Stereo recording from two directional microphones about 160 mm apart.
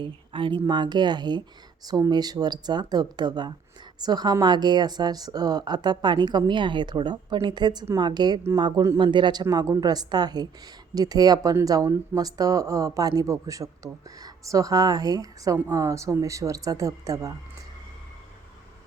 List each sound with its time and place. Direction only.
0.0 s speech: 30° right (ahead or behind)